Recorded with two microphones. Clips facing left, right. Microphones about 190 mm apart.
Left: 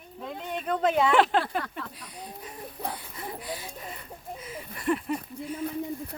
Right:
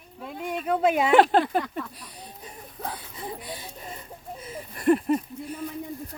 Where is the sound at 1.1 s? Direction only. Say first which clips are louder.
Right 7 dB; 45° right (ahead or behind).